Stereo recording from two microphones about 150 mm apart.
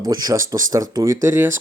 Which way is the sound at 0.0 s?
25° right (ahead or behind).